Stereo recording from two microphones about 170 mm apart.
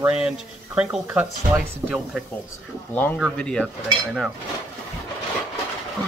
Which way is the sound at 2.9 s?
10° left (ahead or behind).